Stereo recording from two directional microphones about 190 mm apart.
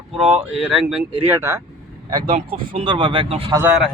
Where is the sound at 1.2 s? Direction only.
15° right (ahead or behind).